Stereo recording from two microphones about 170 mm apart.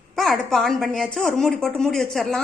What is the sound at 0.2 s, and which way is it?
A woman's voice, centre (ahead or behind).